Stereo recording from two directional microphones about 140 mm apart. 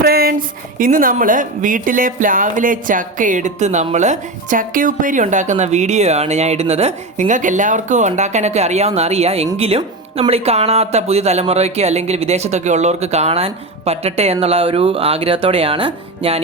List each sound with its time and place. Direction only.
0.0 s speech: 90° right; by 16.4 s 40° right (ahead or behind)